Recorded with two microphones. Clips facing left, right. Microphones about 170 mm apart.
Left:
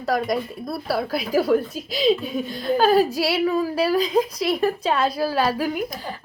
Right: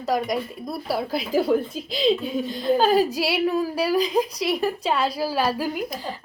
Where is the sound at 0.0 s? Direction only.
15° right (ahead or behind).